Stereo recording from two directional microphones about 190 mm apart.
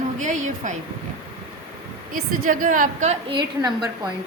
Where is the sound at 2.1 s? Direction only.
45° right (ahead or behind).